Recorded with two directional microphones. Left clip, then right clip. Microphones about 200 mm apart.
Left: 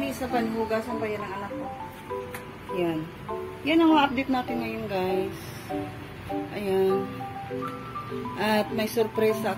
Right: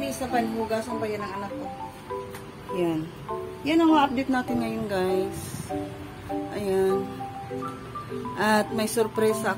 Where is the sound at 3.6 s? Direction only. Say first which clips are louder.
Even; 5° right (ahead or behind); by 5.2 s 20° right (ahead or behind).